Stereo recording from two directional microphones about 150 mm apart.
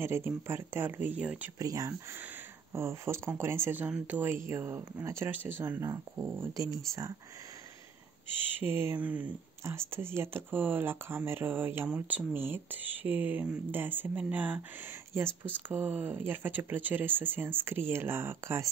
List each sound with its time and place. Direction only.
0.0 s speech: 15° right (ahead or behind)
1.6 s speech: 25° right (ahead or behind)
8.5 s speech: 15° right (ahead or behind)